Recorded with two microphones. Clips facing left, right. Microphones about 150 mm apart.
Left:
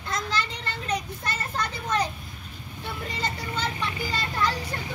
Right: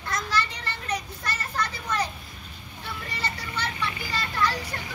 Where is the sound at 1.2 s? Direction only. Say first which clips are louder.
Right 1 dB; 25° left (ahead or behind).